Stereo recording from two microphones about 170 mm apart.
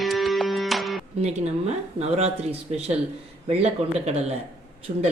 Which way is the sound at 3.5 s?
35° right (ahead or behind).